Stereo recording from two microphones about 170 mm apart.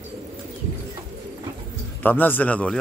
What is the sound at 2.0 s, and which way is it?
Speech, 10° left (ahead or behind).